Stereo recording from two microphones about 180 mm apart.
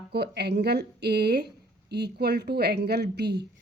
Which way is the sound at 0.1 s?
65° right (ahead or behind).